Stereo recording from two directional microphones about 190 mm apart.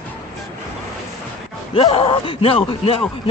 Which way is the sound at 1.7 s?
30° left (ahead or behind).